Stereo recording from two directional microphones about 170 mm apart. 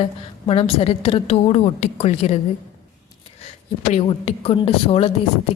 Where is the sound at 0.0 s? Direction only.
30° left (ahead or behind).